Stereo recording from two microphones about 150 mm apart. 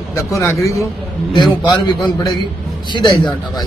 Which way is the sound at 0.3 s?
20° left (ahead or behind).